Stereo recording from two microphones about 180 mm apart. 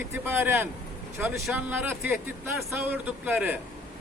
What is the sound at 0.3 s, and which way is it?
Speech, 10° right (ahead or behind).